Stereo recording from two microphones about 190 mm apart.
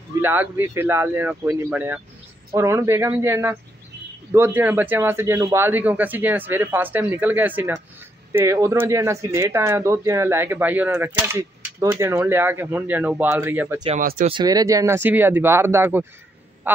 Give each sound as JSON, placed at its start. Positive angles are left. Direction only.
{"t": 0.2, "sound": "speech", "side_deg": -10}
{"t": 13.9, "sound": "speech", "side_deg": -45}
{"t": 14.3, "sound": "speech", "side_deg": -20}
{"t": 16.6, "sound": "a sound", "side_deg": -10}